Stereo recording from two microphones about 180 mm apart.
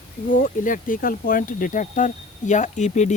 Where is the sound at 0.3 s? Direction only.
50° left (ahead or behind).